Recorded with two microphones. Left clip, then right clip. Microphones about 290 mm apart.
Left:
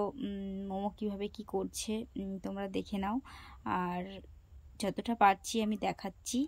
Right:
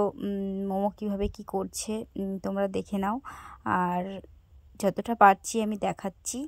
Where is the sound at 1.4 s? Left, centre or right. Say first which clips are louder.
Right 5 dB; right.